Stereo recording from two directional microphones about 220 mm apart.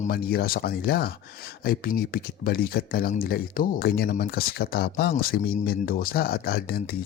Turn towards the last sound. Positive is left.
turn(degrees=45)  # may be behind; listen again after turning